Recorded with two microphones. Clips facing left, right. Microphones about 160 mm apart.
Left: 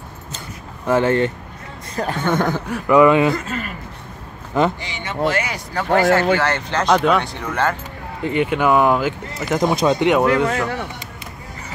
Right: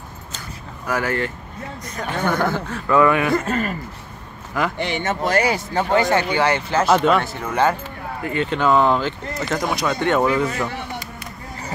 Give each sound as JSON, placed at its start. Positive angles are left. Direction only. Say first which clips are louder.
{"t": 0.8, "sound": "speech", "louder": "left 6 dB", "side_deg": 25}
{"t": 3.4, "sound": "speech", "louder": "right 5 dB", "side_deg": -45}
{"t": 4.7, "sound": "speech", "louder": "right 3 dB", "side_deg": -55}
{"t": 5.8, "sound": "speech", "louder": "left 3 dB", "side_deg": -20}
{"t": 8.2, "sound": "speech", "louder": "left 3 dB", "side_deg": 20}
{"t": 9.6, "sound": "speech", "louder": "left 8 dB", "side_deg": 25}
{"t": 10.3, "sound": "speech", "louder": "left 3 dB", "side_deg": 70}